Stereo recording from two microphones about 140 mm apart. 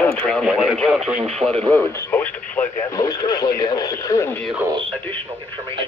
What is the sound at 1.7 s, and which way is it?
Speech, 10° left (ahead or behind).